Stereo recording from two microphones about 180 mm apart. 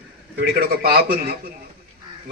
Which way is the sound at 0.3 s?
60° right (ahead or behind).